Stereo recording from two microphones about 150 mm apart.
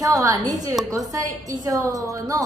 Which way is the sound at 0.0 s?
25° right (ahead or behind).